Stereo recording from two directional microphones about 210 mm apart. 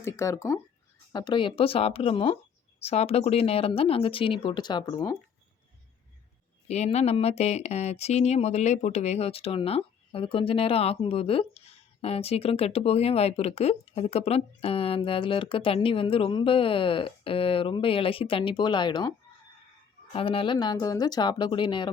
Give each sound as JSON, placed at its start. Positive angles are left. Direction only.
{"t": 0.0, "sound": "speech", "side_deg": 15}
{"t": 6.7, "sound": "speech", "side_deg": 30}
{"t": 20.1, "sound": "speech", "side_deg": 25}